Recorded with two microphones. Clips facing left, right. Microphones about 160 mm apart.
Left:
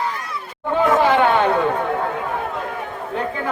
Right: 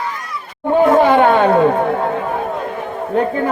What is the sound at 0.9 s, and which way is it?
Chatter, 45° right (ahead or behind).